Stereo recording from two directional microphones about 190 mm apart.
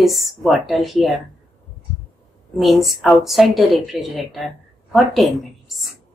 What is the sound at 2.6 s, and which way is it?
A woman's voice, centre (ahead or behind).